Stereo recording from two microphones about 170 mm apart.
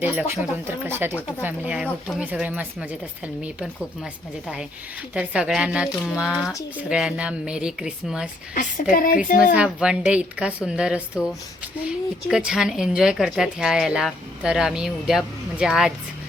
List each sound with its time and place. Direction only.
0.0 s a woman's voice: 10° right (ahead or behind)
8.5 s a woman's voice: 55° left (ahead or behind)
9.5 s a woman's voice: 5° right (ahead or behind)